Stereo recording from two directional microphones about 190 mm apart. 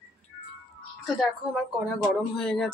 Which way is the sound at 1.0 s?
Centre (ahead or behind).